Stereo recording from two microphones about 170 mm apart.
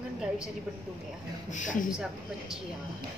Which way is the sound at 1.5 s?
50° left (ahead or behind).